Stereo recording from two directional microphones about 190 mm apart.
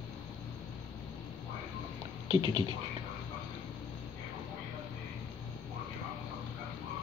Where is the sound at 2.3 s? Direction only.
25° right (ahead or behind).